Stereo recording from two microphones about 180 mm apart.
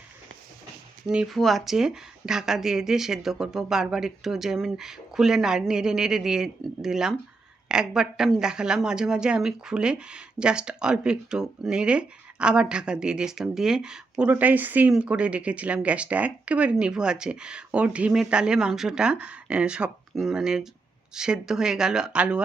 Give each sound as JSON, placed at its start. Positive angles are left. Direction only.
{"t": 1.1, "sound": "a woman's voice", "side_deg": 0}